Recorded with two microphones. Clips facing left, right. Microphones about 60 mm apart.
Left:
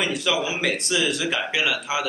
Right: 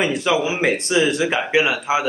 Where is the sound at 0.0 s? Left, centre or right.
Right.